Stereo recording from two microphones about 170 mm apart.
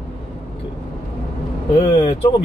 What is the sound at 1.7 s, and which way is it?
Speech, 35° left (ahead or behind).